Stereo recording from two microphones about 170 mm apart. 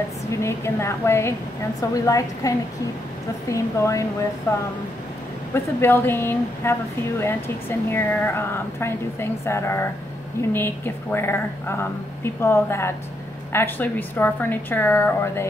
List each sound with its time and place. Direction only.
0.4 s speech: 15° left (ahead or behind)